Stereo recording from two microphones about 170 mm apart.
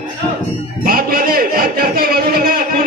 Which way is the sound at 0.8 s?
60° right (ahead or behind).